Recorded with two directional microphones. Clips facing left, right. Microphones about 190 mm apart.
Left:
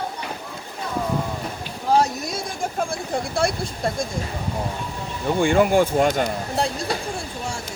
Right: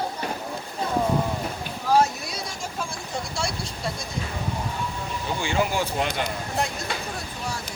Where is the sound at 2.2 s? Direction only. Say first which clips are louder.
Left 6 dB; 50° left (ahead or behind).